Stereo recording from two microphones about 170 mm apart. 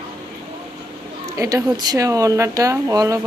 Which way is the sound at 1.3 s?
20° right (ahead or behind).